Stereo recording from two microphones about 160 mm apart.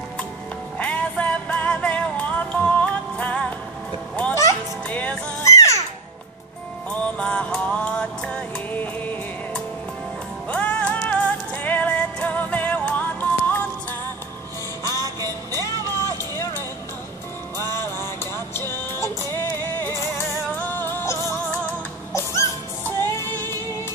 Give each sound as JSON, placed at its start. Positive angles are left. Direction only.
{"t": 0.7, "sound": "music", "side_deg": 10}
{"t": 5.4, "sound": "music", "side_deg": 20}
{"t": 7.2, "sound": "music", "side_deg": 10}
{"t": 14.8, "sound": "music", "side_deg": 20}
{"t": 17.6, "sound": "music", "side_deg": 15}
{"t": 20.5, "sound": "music", "side_deg": 15}